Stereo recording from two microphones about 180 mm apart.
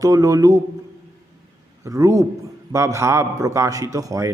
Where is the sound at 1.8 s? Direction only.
20° right (ahead or behind).